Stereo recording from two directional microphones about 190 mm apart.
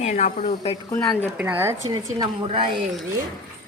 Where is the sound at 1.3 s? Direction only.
10° right (ahead or behind); by 2.7 s 25° right (ahead or behind).